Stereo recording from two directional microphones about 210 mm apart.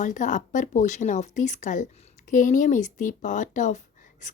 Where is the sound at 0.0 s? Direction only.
35° left (ahead or behind).